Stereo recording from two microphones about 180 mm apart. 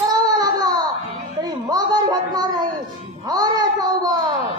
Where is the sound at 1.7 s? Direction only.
20° right (ahead or behind).